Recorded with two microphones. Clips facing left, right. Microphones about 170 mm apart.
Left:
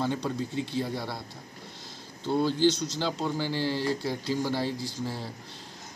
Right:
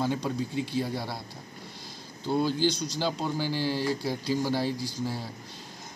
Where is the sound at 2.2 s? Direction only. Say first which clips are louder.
Left 2 dB; 10° right (ahead or behind).